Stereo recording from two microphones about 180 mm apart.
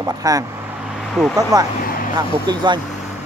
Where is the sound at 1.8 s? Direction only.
55° left (ahead or behind).